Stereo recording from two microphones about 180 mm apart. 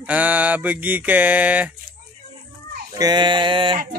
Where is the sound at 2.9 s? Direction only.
25° right (ahead or behind).